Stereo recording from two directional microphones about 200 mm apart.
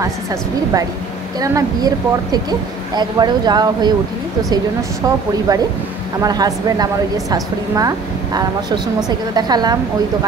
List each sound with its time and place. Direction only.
1.4 s a woman's voice: 20° right (ahead or behind)
5.5 s a woman's voice: 15° right (ahead or behind)